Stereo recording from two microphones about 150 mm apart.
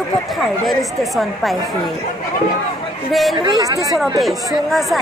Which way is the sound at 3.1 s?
Centre (ahead or behind).